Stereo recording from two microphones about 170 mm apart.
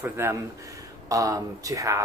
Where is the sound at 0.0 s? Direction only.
15° right (ahead or behind).